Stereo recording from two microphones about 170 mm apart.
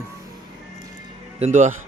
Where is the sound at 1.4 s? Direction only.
45° right (ahead or behind).